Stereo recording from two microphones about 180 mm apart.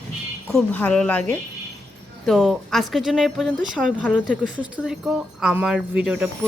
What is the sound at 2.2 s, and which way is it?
Speech, centre (ahead or behind).